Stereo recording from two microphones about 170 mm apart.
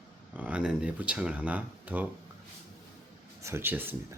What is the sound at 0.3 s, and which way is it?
Speech, 5° right (ahead or behind).